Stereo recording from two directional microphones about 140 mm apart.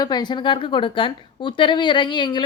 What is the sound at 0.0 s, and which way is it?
A woman's voice, 30° left (ahead or behind).